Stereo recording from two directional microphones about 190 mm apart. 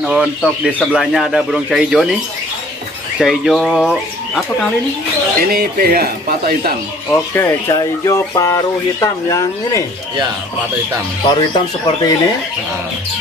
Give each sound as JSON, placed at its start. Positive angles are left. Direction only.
{"t": 0.0, "sound": "speech", "side_deg": -5}
{"t": 3.2, "sound": "speech", "side_deg": 0}
{"t": 5.4, "sound": "speech", "side_deg": -55}
{"t": 7.1, "sound": "speech", "side_deg": 15}
{"t": 11.2, "sound": "speech", "side_deg": 20}